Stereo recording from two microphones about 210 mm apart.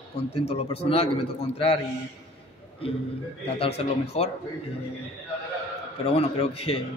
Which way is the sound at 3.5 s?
30° left (ahead or behind).